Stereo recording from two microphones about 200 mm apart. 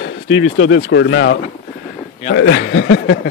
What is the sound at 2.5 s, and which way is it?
Speech, 90° left.